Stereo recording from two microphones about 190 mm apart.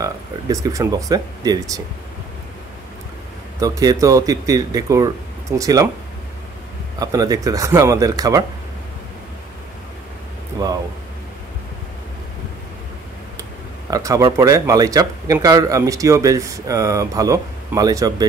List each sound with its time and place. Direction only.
0.0 s speech: 15° right (ahead or behind)
3.5 s speech: 20° right (ahead or behind)
7.0 s speech: 20° right (ahead or behind)
10.6 s a sound: 20° right (ahead or behind)
13.4 s speech: 15° right (ahead or behind)